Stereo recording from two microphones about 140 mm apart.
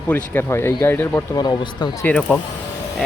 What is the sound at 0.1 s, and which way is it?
Speech, 15° left (ahead or behind).